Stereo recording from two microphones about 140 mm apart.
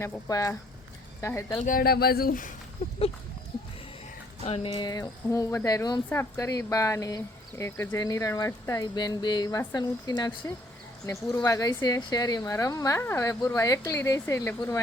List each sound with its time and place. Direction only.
0.0 s speech: 25° left (ahead or behind)
1.6 s speech: 90° left
4.4 s speech: 40° left (ahead or behind); by 14.8 s 20° left (ahead or behind)